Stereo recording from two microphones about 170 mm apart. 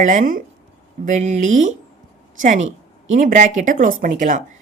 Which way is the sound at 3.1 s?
50° right (ahead or behind).